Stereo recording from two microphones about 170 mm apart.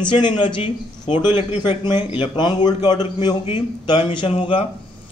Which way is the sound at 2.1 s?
25° left (ahead or behind).